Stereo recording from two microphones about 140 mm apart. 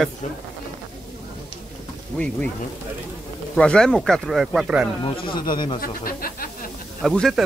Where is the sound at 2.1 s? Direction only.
10° left (ahead or behind).